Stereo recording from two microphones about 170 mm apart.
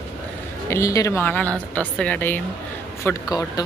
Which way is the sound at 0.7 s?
20° left (ahead or behind).